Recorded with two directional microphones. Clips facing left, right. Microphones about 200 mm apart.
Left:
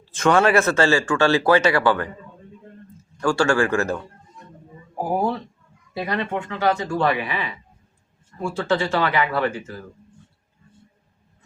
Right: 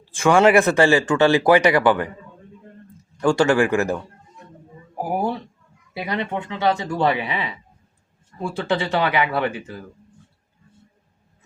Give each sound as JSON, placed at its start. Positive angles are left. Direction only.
{"t": 0.1, "sound": "speech", "side_deg": -10}
{"t": 3.2, "sound": "speech", "side_deg": -20}
{"t": 6.0, "sound": "speech", "side_deg": -15}